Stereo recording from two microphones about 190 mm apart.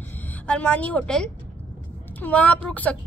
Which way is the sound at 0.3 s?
5° left (ahead or behind).